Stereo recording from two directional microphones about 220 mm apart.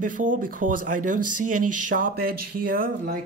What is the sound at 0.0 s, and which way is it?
Speech, 35° right (ahead or behind).